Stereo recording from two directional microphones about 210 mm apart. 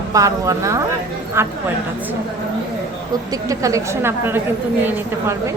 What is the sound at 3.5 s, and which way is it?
A woman's voice, 15° right (ahead or behind).